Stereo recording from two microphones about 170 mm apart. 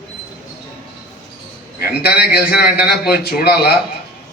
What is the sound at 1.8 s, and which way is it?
A man's voice, 70° left (ahead or behind).